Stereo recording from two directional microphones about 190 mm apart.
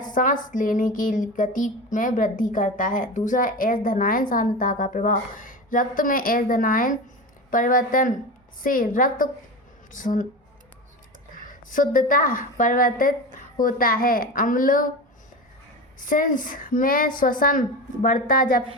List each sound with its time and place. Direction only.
0.0 s speech: 45° left (ahead or behind)
11.4 s speech: 45° left (ahead or behind)
16.0 s speech: 45° left (ahead or behind)